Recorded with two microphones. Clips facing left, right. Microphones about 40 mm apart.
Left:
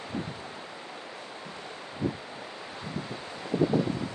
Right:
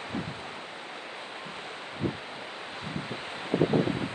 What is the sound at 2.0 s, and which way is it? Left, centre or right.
Rustling leaves, right.